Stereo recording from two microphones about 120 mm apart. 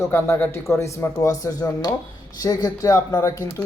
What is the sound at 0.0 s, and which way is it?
Speech, 20° left (ahead or behind).